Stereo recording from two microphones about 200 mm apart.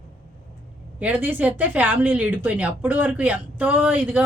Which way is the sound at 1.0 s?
10° right (ahead or behind).